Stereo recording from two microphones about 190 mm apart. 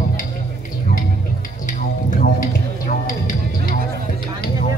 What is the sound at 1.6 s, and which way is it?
Music, 45° left (ahead or behind).